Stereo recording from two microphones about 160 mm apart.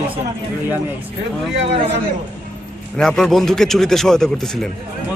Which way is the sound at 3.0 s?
5° left (ahead or behind).